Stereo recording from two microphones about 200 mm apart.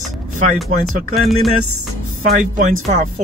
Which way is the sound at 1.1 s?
Centre (ahead or behind).